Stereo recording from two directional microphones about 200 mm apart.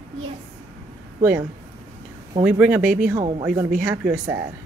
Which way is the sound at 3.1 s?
25° right (ahead or behind).